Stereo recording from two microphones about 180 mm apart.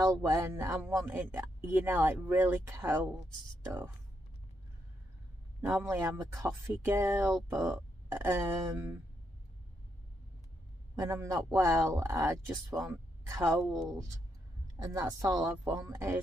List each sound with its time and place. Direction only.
0.0 s speech: 20° right (ahead or behind)
5.6 s speech: 15° right (ahead or behind)
11.0 s speech: 15° right (ahead or behind)
14.8 s speech: 20° right (ahead or behind)